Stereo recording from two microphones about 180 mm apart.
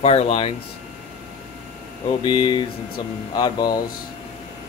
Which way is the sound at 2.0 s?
30° left (ahead or behind).